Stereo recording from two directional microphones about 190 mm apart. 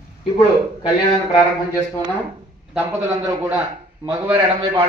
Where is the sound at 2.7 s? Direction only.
10° right (ahead or behind).